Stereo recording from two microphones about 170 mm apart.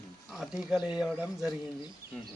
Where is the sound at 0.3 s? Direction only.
Centre (ahead or behind).